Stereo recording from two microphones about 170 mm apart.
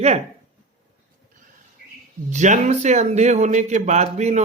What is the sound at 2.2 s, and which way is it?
Speech, 45° right (ahead or behind).